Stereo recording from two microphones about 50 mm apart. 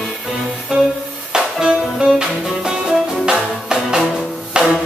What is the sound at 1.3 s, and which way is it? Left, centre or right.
Music, centre.